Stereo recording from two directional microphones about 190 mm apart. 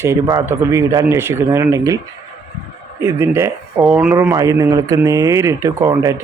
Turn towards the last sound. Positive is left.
turn(degrees=-15)  # may be behind; listen again after turning